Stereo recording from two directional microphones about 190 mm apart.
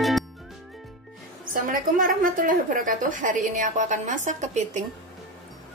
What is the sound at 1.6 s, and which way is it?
A woman's voice, 45° right (ahead or behind).